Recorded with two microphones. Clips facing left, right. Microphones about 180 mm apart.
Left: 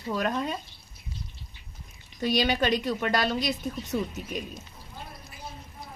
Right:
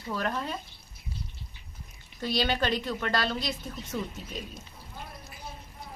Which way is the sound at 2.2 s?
15° left (ahead or behind).